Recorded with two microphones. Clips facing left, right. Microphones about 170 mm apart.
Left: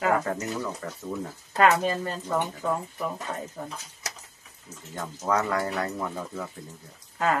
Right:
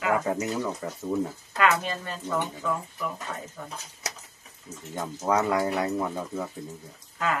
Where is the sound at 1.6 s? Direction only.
40° left (ahead or behind).